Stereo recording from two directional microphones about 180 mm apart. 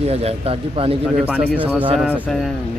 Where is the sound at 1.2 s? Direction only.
5° right (ahead or behind).